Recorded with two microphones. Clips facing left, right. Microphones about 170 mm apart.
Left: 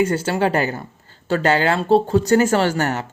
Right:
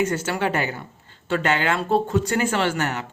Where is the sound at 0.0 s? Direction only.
30° left (ahead or behind).